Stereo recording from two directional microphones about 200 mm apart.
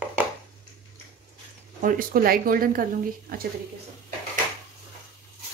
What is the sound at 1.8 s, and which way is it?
Speech, 45° right (ahead or behind).